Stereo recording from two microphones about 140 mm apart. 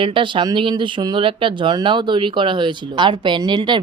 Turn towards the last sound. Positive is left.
turn(degrees=-35)  # may be behind; listen again after turning